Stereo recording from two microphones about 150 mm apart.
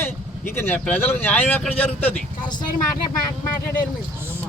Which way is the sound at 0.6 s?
15° left (ahead or behind).